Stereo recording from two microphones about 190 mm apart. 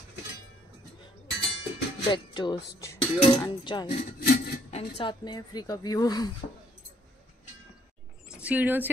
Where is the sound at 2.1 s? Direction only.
25° left (ahead or behind).